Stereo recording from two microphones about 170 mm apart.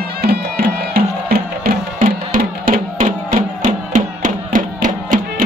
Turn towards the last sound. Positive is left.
turn(degrees=-50)  # may be behind; listen again after turning